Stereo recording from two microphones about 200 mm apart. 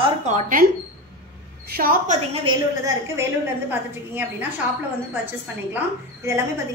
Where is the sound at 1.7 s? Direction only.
45° right (ahead or behind).